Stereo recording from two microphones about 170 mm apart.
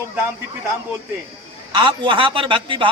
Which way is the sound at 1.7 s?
30° right (ahead or behind).